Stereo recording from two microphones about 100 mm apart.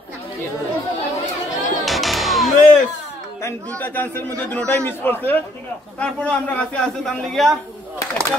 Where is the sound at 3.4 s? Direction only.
15° left (ahead or behind).